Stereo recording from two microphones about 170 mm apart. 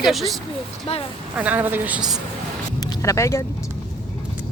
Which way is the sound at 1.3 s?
10° right (ahead or behind).